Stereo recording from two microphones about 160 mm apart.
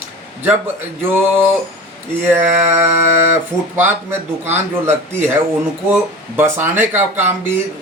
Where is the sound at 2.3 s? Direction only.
15° right (ahead or behind).